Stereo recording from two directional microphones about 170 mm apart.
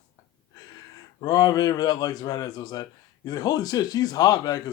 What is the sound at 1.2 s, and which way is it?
Speech, 25° left (ahead or behind).